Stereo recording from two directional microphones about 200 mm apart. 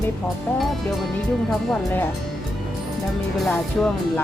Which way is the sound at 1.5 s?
5° left (ahead or behind).